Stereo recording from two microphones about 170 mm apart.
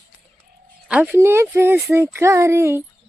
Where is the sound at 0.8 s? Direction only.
5° right (ahead or behind).